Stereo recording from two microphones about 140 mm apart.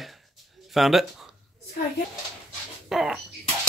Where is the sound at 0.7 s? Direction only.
Centre (ahead or behind).